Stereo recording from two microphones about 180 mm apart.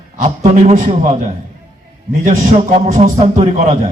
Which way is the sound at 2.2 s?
45° right (ahead or behind).